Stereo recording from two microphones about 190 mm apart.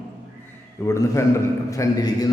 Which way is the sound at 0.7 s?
15° left (ahead or behind).